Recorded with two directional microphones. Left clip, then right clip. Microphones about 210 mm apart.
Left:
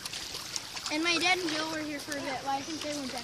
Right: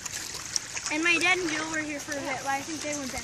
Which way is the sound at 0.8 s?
50° left (ahead or behind).